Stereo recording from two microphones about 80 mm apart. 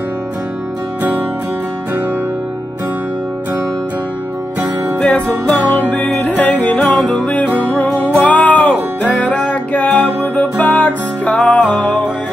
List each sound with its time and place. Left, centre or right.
5.5 s music: centre
6.9 s music: centre
7.2 s music: centre